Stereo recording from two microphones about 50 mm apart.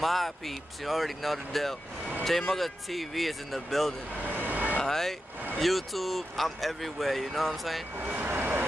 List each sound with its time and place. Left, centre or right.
0.0 s speech: centre
4.2 s vehicle: right
4.7 s vehicle: centre
5.6 s speech: centre
8.2 s vehicle: right